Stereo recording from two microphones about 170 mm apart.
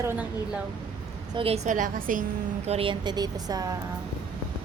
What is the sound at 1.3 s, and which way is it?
A woman's voice, 35° right (ahead or behind).